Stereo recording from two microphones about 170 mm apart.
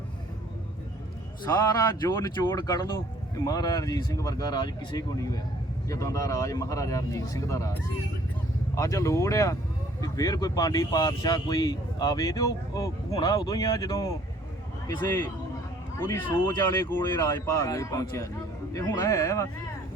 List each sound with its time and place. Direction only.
1.5 s speech: 20° left (ahead or behind)